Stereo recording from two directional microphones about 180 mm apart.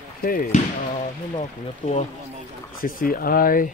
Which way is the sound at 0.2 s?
50° left (ahead or behind).